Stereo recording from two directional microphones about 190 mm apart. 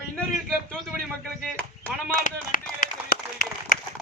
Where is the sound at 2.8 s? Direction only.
45° left (ahead or behind).